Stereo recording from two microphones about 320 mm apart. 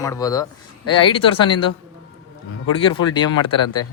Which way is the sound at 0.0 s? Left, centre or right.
Centre.